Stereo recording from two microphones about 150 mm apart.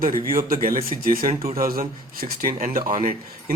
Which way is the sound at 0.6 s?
65° right (ahead or behind).